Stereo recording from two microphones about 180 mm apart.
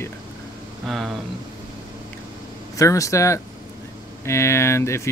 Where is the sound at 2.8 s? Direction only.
15° left (ahead or behind).